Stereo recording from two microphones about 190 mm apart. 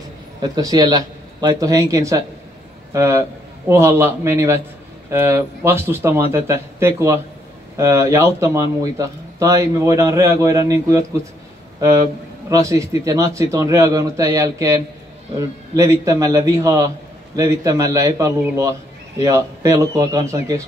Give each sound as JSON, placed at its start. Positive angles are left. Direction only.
{"t": 0.4, "sound": "a man's voice", "side_deg": -20}
{"t": 12.4, "sound": "speech", "side_deg": -15}